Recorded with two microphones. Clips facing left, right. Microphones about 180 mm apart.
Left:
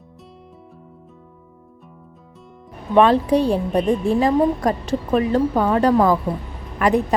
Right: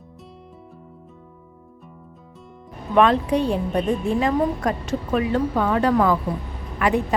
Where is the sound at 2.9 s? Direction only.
30° left (ahead or behind).